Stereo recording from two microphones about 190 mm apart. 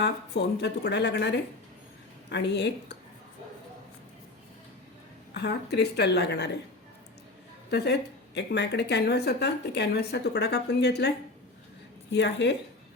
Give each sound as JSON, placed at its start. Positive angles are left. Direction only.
{"t": 0.0, "sound": "a woman's voice", "side_deg": 60}
{"t": 5.3, "sound": "a woman's voice", "side_deg": 60}
{"t": 7.7, "sound": "a woman's voice", "side_deg": 60}
{"t": 12.1, "sound": "a woman's voice", "side_deg": 65}